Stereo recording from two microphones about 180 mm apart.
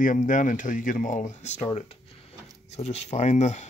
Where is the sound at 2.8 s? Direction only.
35° left (ahead or behind).